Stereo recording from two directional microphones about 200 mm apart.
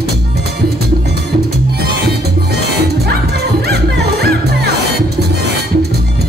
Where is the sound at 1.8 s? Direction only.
50° right (ahead or behind).